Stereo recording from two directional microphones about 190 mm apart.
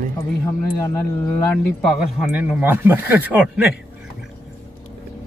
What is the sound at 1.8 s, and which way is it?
Speech, 5° right (ahead or behind).